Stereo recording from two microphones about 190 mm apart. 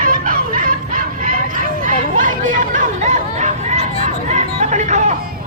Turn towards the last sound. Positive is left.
turn(degrees=-40)  # may be behind; listen again after turning